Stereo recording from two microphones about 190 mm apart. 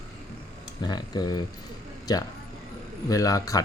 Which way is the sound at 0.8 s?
20° left (ahead or behind).